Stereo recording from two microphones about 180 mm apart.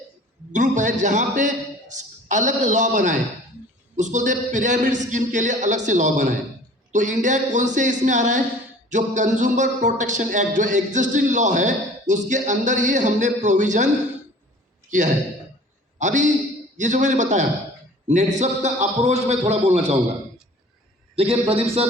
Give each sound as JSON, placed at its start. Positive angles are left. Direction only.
{"t": 0.8, "sound": "a man's voice", "side_deg": -45}
{"t": 21.2, "sound": "a man's voice", "side_deg": -35}